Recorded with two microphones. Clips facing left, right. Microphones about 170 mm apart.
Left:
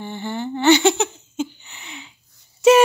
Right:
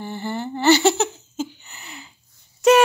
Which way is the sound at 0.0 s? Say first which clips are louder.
Even; 5° right (ahead or behind).